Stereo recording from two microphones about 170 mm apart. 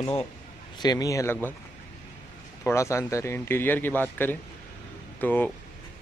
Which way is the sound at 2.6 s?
15° left (ahead or behind).